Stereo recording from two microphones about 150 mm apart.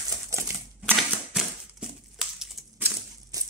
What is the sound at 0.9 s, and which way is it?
Typewriter, centre (ahead or behind).